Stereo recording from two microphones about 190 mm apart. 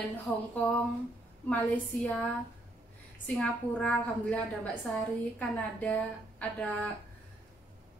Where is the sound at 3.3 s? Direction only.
5° left (ahead or behind).